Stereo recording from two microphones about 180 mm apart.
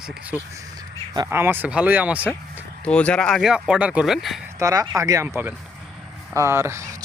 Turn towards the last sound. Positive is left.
turn(degrees=-15)  # may be behind; listen again after turning